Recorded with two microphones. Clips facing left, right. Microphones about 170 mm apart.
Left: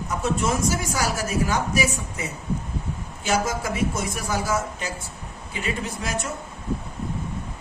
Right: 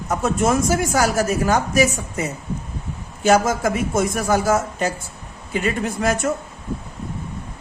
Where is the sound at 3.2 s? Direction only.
50° right (ahead or behind).